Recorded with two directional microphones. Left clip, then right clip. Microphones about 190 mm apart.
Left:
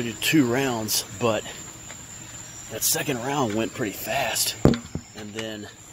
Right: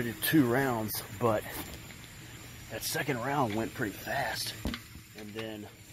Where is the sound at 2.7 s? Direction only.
25° left (ahead or behind).